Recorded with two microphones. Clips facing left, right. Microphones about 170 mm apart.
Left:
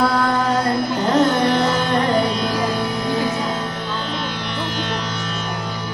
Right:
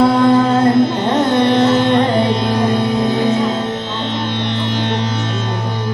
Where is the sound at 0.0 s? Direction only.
25° right (ahead or behind).